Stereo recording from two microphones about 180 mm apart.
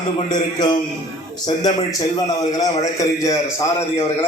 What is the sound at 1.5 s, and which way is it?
A man's voice, 20° left (ahead or behind).